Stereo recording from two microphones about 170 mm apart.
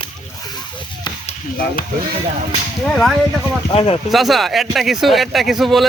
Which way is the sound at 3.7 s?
30° left (ahead or behind).